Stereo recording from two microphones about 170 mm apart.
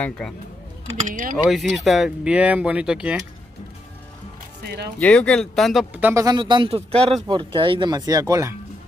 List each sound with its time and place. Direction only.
1.0 s speech: 55° right (ahead or behind)
1.3 s speech: centre (ahead or behind)
4.9 s speech: 10° left (ahead or behind); by 6.2 s 10° right (ahead or behind)
6.2 s speech: 25° right (ahead or behind)